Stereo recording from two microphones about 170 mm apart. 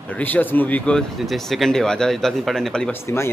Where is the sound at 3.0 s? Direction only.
15° left (ahead or behind).